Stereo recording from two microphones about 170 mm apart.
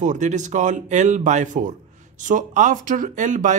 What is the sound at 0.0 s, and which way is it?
Speech, 45° right (ahead or behind).